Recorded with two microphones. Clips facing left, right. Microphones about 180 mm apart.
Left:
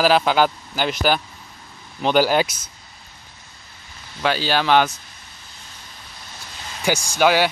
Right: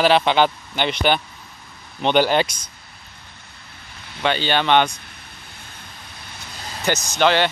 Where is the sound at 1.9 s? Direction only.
5° left (ahead or behind).